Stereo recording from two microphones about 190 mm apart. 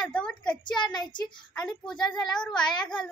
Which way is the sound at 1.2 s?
5° left (ahead or behind).